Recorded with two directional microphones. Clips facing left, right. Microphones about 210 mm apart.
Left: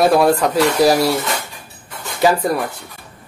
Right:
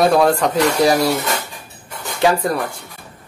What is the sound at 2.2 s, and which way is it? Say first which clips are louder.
Speech: left 1 dB; 5° left (ahead or behind).